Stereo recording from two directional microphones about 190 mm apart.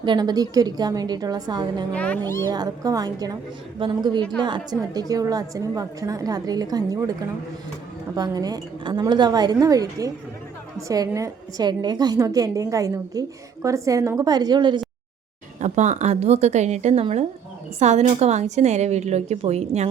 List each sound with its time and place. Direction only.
0.0 s a woman's voice: 25° right (ahead or behind)
1.9 s a child's voice: 5° left (ahead or behind)
2.5 s a woman's voice: 20° right (ahead or behind)
4.2 s a child's voice: 5° left (ahead or behind)
4.4 s a woman's voice: 20° right (ahead or behind)
8.1 s a woman's voice: 20° right (ahead or behind)
15.6 s a woman's voice: 40° right (ahead or behind)